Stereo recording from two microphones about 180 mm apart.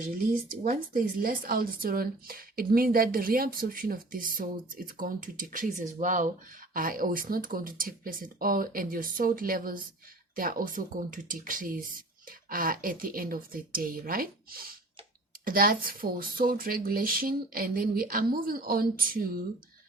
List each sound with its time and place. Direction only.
0.6 s speech: 50° right (ahead or behind)